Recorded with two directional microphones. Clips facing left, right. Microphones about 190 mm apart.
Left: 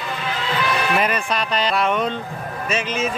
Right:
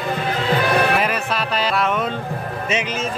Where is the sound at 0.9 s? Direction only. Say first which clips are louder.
Even; 5° right (ahead or behind).